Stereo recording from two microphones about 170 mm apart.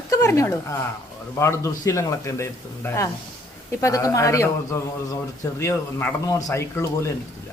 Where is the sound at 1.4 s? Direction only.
15° left (ahead or behind).